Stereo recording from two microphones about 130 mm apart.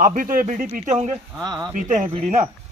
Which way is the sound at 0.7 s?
65° right (ahead or behind).